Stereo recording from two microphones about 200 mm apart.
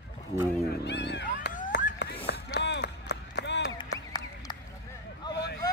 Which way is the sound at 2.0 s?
55° left (ahead or behind).